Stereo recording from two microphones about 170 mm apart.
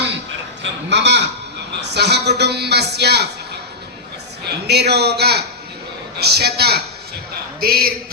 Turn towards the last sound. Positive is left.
turn(degrees=-60)  # may be behind; listen again after turning